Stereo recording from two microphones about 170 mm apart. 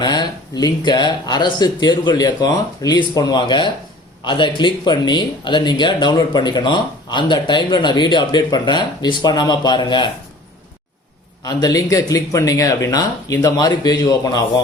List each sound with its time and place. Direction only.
0.0 s speech: 25° left (ahead or behind)
11.4 s speech: 20° left (ahead or behind)